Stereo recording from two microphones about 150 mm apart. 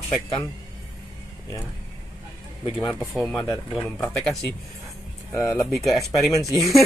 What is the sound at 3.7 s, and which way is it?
Speech, 5° left (ahead or behind).